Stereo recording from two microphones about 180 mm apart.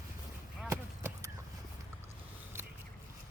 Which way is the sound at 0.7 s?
15° right (ahead or behind).